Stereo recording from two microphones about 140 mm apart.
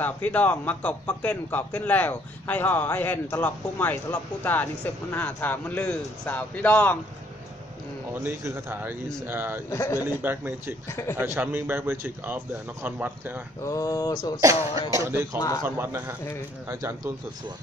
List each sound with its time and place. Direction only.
0.0 s a man's voice: 10° left (ahead or behind)
8.2 s speech: 15° right (ahead or behind)
9.7 s a sound: 25° left (ahead or behind)
10.2 s speech: 15° right (ahead or behind)
13.7 s a sound: 25° left (ahead or behind)
14.4 s speech: 20° right (ahead or behind)